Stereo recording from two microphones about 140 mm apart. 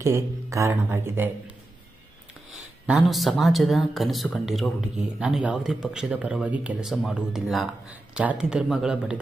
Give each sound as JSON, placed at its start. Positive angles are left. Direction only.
{"t": 0.0, "sound": "speech", "side_deg": -20}
{"t": 2.9, "sound": "speech", "side_deg": 0}